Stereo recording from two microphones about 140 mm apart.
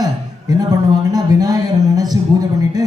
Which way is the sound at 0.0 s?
25° right (ahead or behind).